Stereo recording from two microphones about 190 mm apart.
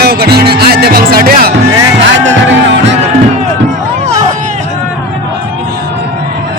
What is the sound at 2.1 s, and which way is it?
Music, 75° right (ahead or behind).